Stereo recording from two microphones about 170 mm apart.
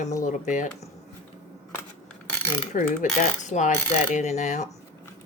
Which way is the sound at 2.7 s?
50° left (ahead or behind).